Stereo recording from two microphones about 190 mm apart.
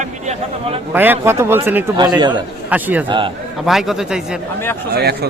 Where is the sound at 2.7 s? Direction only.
10° right (ahead or behind).